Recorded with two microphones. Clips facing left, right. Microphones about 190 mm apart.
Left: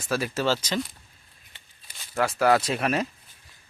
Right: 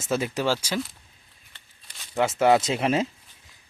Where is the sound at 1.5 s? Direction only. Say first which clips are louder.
Even; 5° left (ahead or behind).